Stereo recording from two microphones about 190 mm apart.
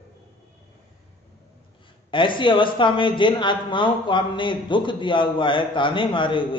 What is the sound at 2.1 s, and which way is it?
Speech, 25° left (ahead or behind).